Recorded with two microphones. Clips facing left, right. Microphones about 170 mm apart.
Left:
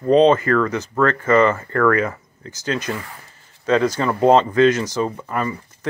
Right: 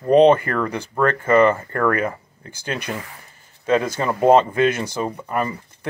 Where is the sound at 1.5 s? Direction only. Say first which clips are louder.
Left 3 dB; 30° right (ahead or behind).